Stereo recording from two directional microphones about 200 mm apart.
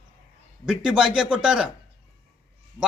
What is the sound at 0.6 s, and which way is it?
A man's voice, 5° right (ahead or behind).